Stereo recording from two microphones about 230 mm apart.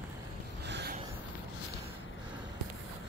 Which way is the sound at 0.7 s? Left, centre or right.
Right.